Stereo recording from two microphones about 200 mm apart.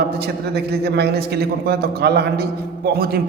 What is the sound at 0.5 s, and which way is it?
A man's voice, 55° right (ahead or behind).